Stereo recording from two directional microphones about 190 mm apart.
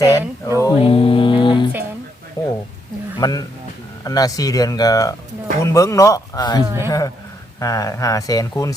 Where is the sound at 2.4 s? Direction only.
20° left (ahead or behind).